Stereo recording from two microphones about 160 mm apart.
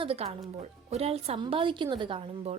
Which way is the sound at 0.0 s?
40° right (ahead or behind).